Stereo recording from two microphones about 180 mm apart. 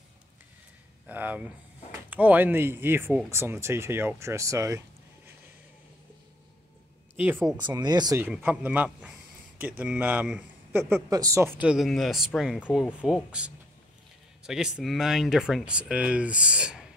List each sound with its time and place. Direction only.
1.0 s speech: 10° right (ahead or behind)
7.5 s speech: 25° right (ahead or behind)
8.2 s speech: 10° right (ahead or behind)